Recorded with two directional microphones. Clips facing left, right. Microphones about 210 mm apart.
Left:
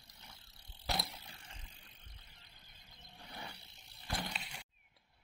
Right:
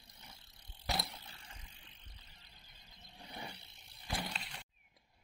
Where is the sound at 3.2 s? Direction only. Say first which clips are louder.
Right 2 dB; 20° right (ahead or behind).